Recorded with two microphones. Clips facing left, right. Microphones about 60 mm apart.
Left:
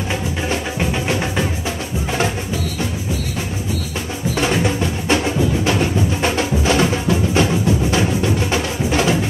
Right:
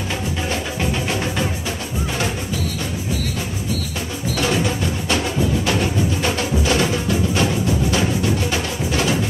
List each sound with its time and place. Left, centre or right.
4.4 s music: left